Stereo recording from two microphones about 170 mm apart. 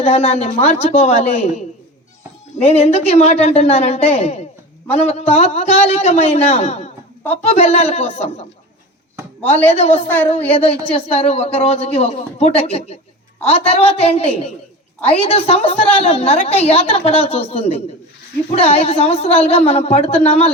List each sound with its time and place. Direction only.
0.0 s a woman's voice: 40° left (ahead or behind)
9.6 s a woman's voice: 40° left (ahead or behind)